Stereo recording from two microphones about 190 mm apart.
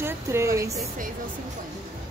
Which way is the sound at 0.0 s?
15° right (ahead or behind).